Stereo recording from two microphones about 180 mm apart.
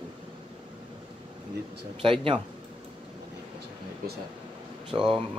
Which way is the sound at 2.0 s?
30° right (ahead or behind).